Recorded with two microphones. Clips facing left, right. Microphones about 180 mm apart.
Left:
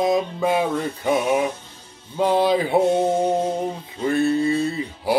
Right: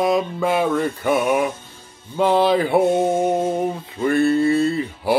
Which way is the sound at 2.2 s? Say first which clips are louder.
Right 2 dB; 60° right (ahead or behind).